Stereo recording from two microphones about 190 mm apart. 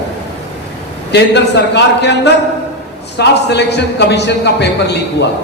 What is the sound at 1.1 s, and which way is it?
A man's voice, 65° left (ahead or behind).